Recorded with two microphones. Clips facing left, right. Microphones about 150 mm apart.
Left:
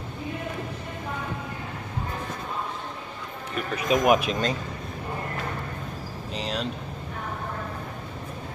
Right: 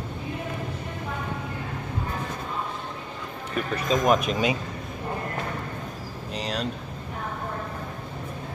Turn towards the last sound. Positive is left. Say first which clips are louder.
# even
turn(degrees=0)  # may be behind; listen again after turning